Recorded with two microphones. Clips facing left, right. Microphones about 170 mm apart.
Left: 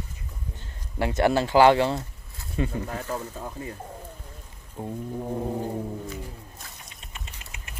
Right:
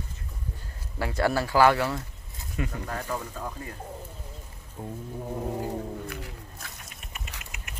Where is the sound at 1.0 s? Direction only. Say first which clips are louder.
Left 4 dB; 20° left (ahead or behind).